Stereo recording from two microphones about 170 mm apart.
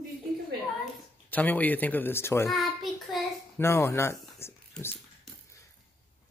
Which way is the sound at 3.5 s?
15° left (ahead or behind).